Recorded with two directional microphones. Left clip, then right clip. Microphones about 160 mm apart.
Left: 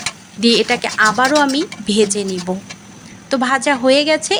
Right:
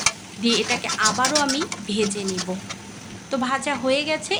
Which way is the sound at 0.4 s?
40° left (ahead or behind).